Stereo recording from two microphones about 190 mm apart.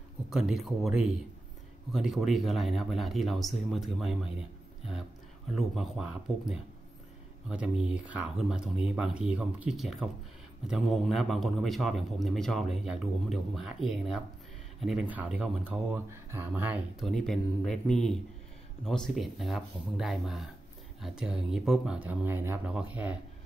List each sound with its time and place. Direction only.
0.3 s a man's voice: 5° right (ahead or behind)
17.1 s a man's voice: 5° left (ahead or behind)